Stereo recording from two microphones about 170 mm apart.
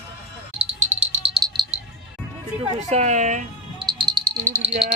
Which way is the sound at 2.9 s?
40° right (ahead or behind).